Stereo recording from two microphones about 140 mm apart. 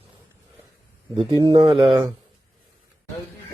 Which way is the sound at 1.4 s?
35° right (ahead or behind).